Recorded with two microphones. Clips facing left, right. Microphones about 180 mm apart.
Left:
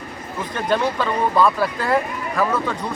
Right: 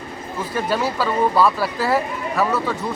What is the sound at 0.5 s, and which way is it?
Speech, 5° right (ahead or behind).